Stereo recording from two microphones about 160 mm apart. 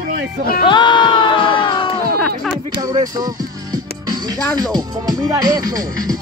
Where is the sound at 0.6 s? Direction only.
30° left (ahead or behind).